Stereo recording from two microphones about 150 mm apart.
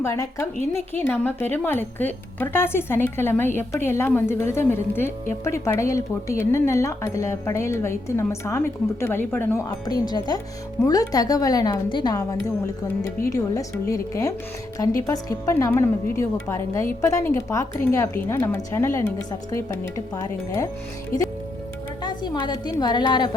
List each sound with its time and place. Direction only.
0.0 s a woman's voice: 20° left (ahead or behind)
22.0 s speech: 30° left (ahead or behind)